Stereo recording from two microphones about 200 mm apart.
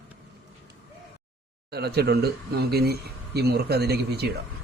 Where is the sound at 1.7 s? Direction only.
55° right (ahead or behind).